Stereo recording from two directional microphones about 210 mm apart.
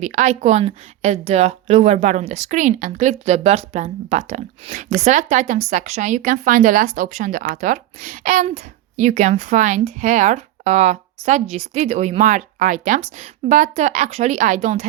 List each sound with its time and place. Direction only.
0.0 s speech: 35° right (ahead or behind)